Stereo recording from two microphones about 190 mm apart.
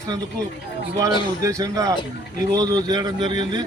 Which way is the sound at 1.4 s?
15° right (ahead or behind).